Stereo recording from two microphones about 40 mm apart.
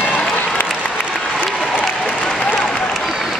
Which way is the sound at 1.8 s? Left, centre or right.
Centre.